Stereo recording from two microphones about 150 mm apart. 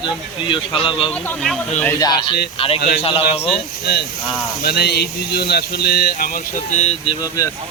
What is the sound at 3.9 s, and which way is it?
Speech, 90° left.